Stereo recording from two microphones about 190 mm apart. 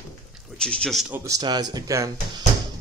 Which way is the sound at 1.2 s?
20° right (ahead or behind).